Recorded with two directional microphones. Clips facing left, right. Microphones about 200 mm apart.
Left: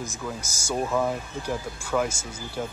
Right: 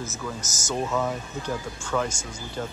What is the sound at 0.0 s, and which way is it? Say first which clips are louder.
Speech: even; 10° left (ahead or behind).